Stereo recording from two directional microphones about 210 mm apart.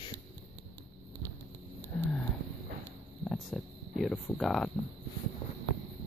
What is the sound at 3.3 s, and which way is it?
Speech, 5° left (ahead or behind).